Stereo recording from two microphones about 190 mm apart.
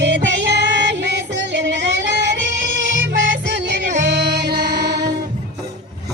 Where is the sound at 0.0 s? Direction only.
70° right (ahead or behind).